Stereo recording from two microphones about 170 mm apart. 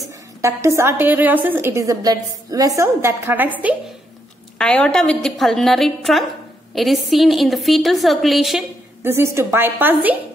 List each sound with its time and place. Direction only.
0.4 s a woman's voice: 15° right (ahead or behind)
4.6 s a woman's voice: 5° left (ahead or behind)
9.0 s a woman's voice: 15° right (ahead or behind)